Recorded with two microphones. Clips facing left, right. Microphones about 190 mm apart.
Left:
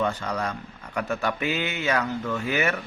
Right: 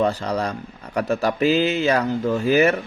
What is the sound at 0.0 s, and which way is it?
A man's voice, 35° right (ahead or behind).